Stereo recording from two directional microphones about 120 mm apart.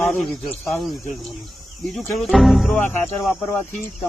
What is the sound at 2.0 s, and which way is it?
Speech, centre (ahead or behind).